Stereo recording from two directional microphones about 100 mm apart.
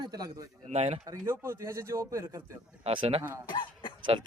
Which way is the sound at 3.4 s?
50° left (ahead or behind).